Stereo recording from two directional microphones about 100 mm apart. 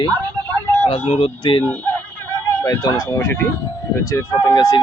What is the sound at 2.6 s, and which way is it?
Speech, 30° left (ahead or behind).